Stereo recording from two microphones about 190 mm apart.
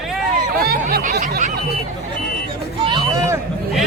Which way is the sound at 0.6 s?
50° right (ahead or behind).